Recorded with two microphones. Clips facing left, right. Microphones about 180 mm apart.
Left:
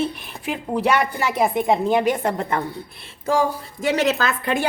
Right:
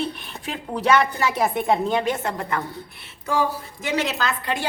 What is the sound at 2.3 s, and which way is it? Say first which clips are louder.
Speech: left 3 dB; 25° left (ahead or behind).